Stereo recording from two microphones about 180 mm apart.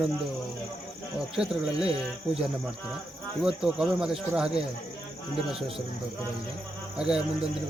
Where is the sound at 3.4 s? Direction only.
5° right (ahead or behind).